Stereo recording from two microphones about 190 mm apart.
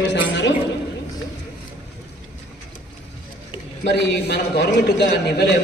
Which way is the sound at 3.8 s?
60° left (ahead or behind).